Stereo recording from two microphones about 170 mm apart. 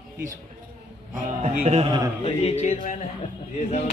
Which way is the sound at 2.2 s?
35° left (ahead or behind).